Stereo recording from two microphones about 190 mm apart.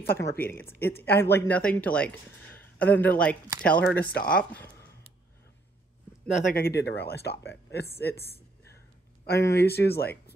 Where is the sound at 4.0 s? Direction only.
50° left (ahead or behind).